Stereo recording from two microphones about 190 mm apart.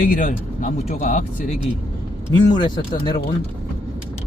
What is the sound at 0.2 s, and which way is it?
Speech, 45° left (ahead or behind).